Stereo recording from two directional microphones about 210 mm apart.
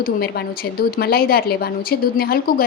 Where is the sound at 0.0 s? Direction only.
45° left (ahead or behind).